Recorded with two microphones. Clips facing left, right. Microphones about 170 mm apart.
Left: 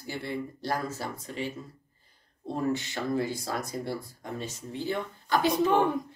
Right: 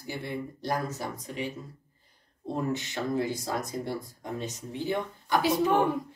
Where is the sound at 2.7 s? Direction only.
20° right (ahead or behind).